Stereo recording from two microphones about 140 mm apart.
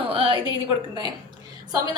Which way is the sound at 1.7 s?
30° right (ahead or behind).